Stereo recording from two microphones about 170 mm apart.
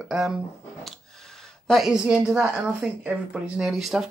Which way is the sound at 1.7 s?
Centre (ahead or behind).